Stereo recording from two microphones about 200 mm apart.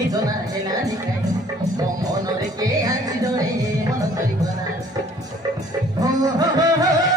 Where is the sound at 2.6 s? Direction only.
20° right (ahead or behind).